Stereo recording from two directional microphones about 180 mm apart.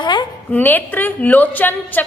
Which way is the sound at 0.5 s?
10° left (ahead or behind).